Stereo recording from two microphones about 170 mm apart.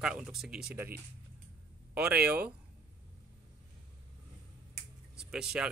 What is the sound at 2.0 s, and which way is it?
Speech, 5° right (ahead or behind).